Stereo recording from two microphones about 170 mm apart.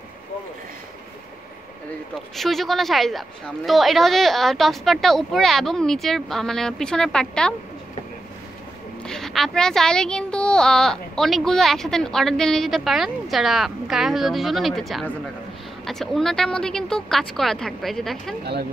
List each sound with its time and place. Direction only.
2.1 s speech: centre (ahead or behind)
9.0 s speech: 5° left (ahead or behind)
18.4 s speech: 75° right (ahead or behind)